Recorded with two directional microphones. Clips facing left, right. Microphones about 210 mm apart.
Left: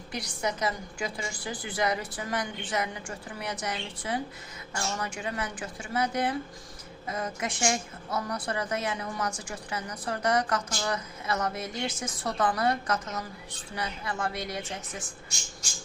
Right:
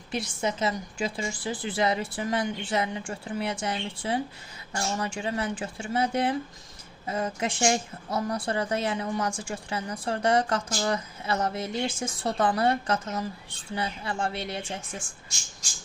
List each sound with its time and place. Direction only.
0.1 s a woman's voice: 25° right (ahead or behind)